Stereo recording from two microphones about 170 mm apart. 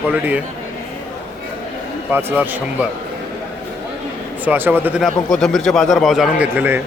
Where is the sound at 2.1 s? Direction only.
10° right (ahead or behind).